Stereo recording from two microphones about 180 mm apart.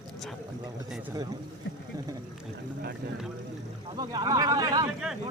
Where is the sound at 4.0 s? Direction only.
20° right (ahead or behind).